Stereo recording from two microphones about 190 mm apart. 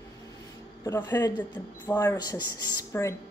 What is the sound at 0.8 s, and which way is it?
A woman's voice, 20° left (ahead or behind).